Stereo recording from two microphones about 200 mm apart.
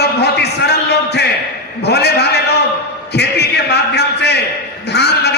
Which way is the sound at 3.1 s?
55° left (ahead or behind).